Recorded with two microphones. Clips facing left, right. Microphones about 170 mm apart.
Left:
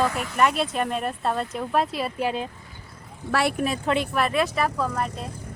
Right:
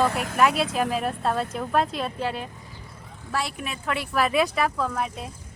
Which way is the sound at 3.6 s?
35° left (ahead or behind).